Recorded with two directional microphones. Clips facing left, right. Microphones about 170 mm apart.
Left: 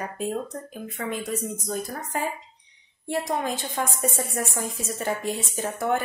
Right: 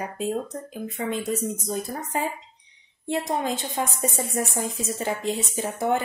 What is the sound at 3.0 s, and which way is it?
A woman's voice, 20° right (ahead or behind).